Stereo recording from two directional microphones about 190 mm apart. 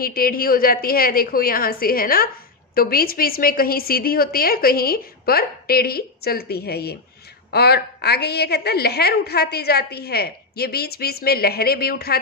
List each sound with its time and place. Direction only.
0.0 s a woman's voice: 50° left (ahead or behind)